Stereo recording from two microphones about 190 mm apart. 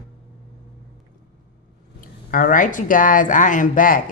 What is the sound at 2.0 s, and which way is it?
Speech, 45° left (ahead or behind).